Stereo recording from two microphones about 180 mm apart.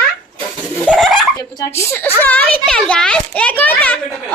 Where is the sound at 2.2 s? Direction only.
10° left (ahead or behind).